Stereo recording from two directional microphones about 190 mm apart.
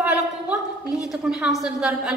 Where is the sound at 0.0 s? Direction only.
5° right (ahead or behind).